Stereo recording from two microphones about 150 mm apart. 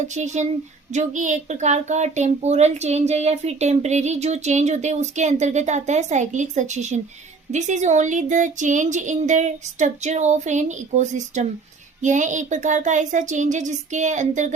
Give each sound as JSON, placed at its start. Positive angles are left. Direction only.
{"t": 0.9, "sound": "speech", "side_deg": -60}